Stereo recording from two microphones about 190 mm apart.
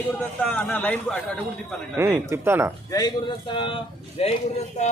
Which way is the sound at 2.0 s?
15° right (ahead or behind).